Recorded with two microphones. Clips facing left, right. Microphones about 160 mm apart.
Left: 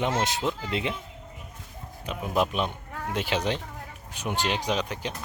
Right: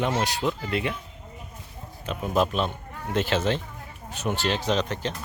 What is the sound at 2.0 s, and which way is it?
Speech, 15° left (ahead or behind).